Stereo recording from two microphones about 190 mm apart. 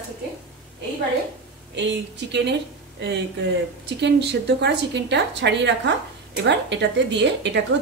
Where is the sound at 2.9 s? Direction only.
65° right (ahead or behind).